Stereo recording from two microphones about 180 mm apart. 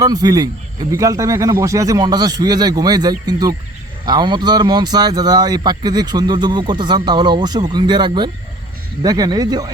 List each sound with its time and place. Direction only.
0.0 s speech: 20° right (ahead or behind)